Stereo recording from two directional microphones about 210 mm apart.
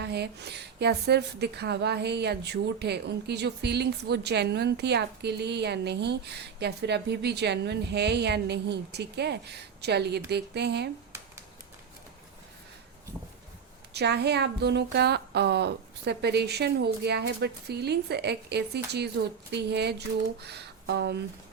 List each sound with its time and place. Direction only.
0.0 s a woman's voice: 50° right (ahead or behind)
13.9 s a woman's voice: 50° right (ahead or behind)